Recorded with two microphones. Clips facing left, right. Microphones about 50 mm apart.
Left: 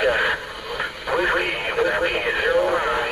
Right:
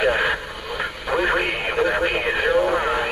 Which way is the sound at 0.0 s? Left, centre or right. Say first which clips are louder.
Even; centre.